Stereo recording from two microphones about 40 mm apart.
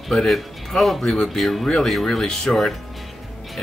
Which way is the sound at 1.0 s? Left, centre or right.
Centre.